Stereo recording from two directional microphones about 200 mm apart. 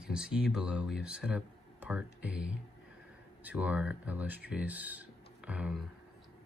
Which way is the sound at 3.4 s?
5° right (ahead or behind).